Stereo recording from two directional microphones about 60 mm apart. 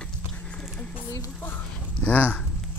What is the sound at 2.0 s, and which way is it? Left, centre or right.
Speech, left.